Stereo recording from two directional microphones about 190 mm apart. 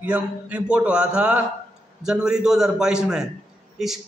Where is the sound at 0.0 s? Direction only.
5° right (ahead or behind).